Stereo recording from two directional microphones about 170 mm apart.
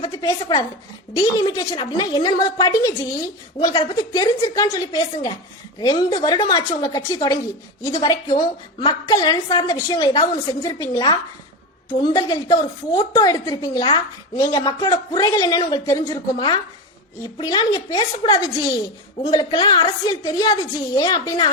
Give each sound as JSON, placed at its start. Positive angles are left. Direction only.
{"t": 0.0, "sound": "a woman's voice", "side_deg": 20}